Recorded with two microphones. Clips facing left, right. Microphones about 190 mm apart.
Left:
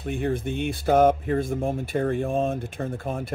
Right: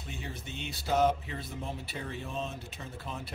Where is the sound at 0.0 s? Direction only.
55° left (ahead or behind).